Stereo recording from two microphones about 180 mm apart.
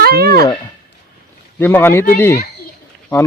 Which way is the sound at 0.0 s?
60° right (ahead or behind).